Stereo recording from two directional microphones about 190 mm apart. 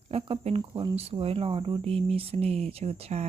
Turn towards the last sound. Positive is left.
turn(degrees=-35)  # may be behind; listen again after turning